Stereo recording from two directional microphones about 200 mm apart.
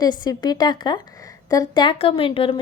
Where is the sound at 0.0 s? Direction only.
20° left (ahead or behind).